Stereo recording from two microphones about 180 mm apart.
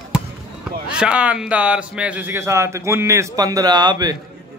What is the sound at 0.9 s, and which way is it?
Speech, 5° right (ahead or behind).